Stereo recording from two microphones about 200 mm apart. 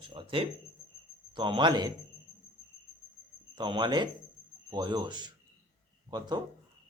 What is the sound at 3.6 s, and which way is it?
Speech, 25° right (ahead or behind).